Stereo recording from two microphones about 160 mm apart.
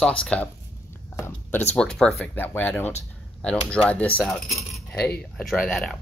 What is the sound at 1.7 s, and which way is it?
Speech, 5° left (ahead or behind).